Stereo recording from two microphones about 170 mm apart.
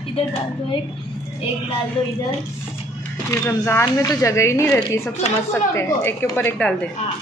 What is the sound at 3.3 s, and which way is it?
Speech, 15° left (ahead or behind).